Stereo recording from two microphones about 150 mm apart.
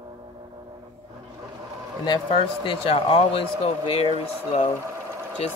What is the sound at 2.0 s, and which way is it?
Speech, 35° left (ahead or behind).